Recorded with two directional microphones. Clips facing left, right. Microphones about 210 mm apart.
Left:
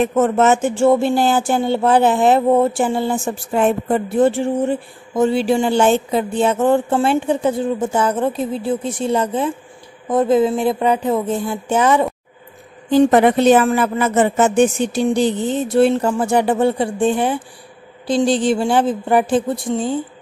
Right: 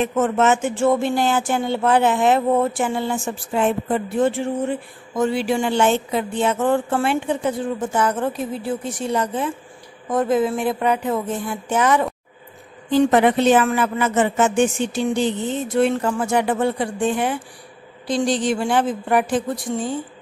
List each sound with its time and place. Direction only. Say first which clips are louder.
0.0 s a woman's voice: left 4 dB; 40° left (ahead or behind)
3.5 s a woman's voice: left 3 dB; 50° left (ahead or behind)
4.2 s speech: left 5 dB; 30° left (ahead or behind)
12.9 s a woman's voice: left 3 dB; 40° left (ahead or behind)